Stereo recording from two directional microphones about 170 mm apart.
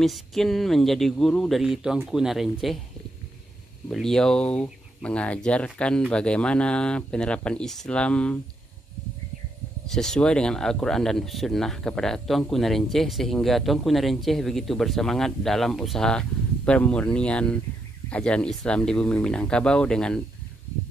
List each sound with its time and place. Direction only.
0.0 s speech: centre (ahead or behind)
3.9 s speech: 5° left (ahead or behind)
9.8 s speech: 5° left (ahead or behind)